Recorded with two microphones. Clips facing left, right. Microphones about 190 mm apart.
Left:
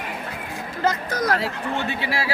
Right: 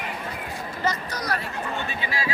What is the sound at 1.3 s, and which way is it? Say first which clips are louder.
Speech: left 5 dB; 90° left.